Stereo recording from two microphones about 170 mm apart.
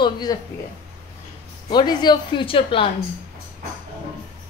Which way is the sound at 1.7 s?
25° left (ahead or behind).